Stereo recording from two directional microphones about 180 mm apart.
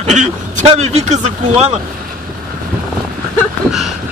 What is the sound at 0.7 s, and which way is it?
Speech, 40° right (ahead or behind).